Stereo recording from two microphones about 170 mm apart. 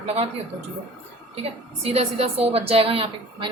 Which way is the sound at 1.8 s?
35° right (ahead or behind).